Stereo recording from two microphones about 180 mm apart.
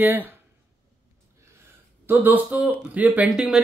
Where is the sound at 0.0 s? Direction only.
10° right (ahead or behind).